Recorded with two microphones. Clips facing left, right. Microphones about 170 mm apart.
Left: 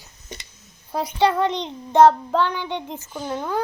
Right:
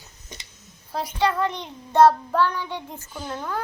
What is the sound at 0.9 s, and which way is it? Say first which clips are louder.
Child singing: left 4 dB; 20° left (ahead or behind).